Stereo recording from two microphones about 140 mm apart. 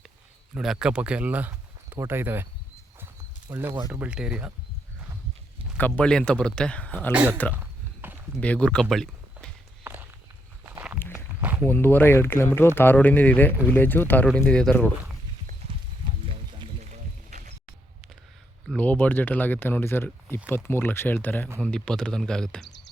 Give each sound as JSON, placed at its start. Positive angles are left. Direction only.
{"t": 0.5, "sound": "speech", "side_deg": -5}
{"t": 3.5, "sound": "speech", "side_deg": -15}
{"t": 5.7, "sound": "speech", "side_deg": 10}
{"t": 7.1, "sound": "speech", "side_deg": -10}
{"t": 7.5, "sound": "a sound", "side_deg": -10}
{"t": 8.4, "sound": "speech", "side_deg": 10}
{"t": 9.8, "sound": "walk", "side_deg": -15}
{"t": 11.1, "sound": "walk", "side_deg": -10}
{"t": 11.7, "sound": "speech", "side_deg": 15}
{"t": 16.2, "sound": "a sound", "side_deg": -40}
{"t": 16.9, "sound": "a sound", "side_deg": -60}
{"t": 18.7, "sound": "speech", "side_deg": 10}